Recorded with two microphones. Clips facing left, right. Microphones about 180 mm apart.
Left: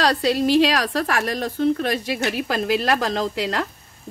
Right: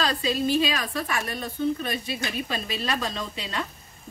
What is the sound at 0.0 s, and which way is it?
A woman's voice, 75° left (ahead or behind).